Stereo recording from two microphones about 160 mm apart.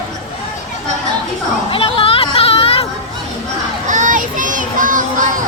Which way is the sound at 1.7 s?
35° left (ahead or behind).